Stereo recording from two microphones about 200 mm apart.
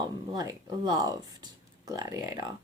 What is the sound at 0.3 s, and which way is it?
Speech, 20° right (ahead or behind).